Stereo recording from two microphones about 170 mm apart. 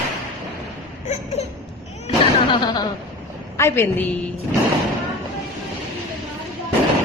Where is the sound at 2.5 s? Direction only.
25° left (ahead or behind).